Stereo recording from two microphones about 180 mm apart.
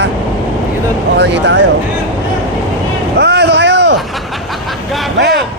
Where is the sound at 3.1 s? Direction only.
65° right (ahead or behind).